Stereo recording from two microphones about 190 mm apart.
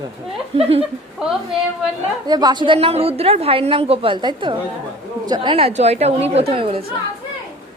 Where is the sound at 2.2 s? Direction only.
20° right (ahead or behind).